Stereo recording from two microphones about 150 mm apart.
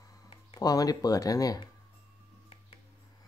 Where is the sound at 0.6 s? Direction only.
25° left (ahead or behind).